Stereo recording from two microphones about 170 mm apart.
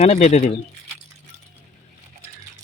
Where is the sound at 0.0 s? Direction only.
40° left (ahead or behind).